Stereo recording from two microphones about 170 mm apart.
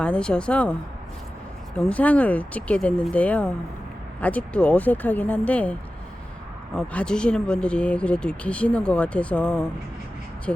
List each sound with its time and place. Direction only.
0.0 s speech: 5° left (ahead or behind)
6.7 s speech: 5° left (ahead or behind)